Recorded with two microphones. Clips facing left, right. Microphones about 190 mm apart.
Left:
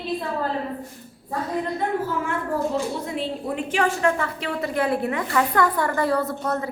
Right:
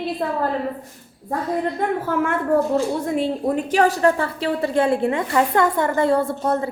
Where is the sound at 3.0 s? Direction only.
45° right (ahead or behind).